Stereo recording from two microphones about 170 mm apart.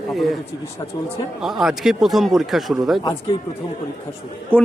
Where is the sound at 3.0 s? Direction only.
30° left (ahead or behind).